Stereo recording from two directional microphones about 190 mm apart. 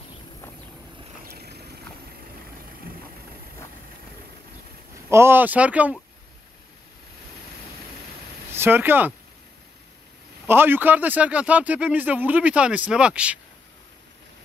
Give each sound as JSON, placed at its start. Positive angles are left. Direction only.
{"t": 1.2, "sound": "vehicle", "side_deg": -55}
{"t": 5.1, "sound": "speech", "side_deg": -10}
{"t": 8.5, "sound": "speech", "side_deg": -10}
{"t": 10.4, "sound": "speech", "side_deg": -10}